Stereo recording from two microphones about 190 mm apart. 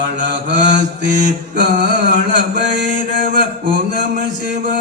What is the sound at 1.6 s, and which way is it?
Speech, 55° right (ahead or behind).